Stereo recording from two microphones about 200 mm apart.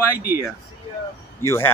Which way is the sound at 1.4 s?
10° left (ahead or behind).